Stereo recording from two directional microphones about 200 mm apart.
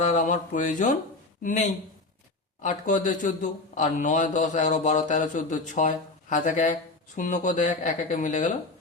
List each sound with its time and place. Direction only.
0.0 s a man's voice: 40° left (ahead or behind)